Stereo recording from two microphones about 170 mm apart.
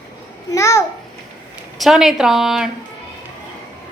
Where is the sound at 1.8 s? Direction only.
Centre (ahead or behind).